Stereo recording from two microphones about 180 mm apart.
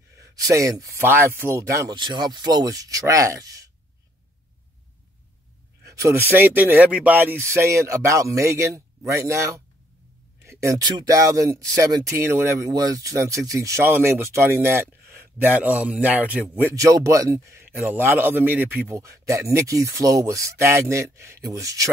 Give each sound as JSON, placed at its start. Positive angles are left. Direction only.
{"t": 0.1, "sound": "speech", "side_deg": -15}
{"t": 5.9, "sound": "speech", "side_deg": -15}